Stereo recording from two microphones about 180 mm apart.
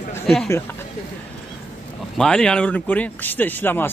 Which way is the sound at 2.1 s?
5° left (ahead or behind).